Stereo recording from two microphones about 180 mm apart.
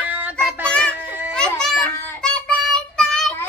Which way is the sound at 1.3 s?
5° left (ahead or behind).